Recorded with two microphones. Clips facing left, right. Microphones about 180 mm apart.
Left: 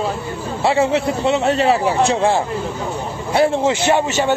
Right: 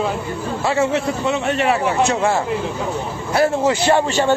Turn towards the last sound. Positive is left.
turn(degrees=20)  # may be behind; listen again after turning